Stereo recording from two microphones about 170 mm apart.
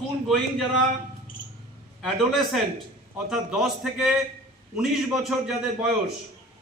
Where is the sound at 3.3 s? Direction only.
5° right (ahead or behind).